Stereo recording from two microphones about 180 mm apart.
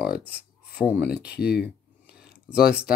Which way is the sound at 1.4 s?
65° left (ahead or behind).